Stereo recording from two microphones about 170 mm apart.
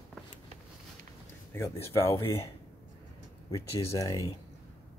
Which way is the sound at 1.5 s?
15° left (ahead or behind).